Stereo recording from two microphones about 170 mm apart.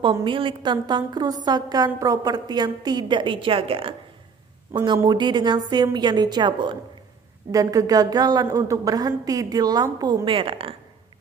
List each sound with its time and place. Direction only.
0.0 s a woman's voice: 30° right (ahead or behind)